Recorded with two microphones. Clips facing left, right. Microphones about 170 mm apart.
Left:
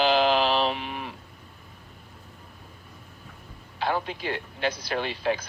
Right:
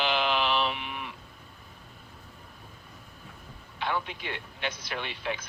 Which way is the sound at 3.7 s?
35° left (ahead or behind).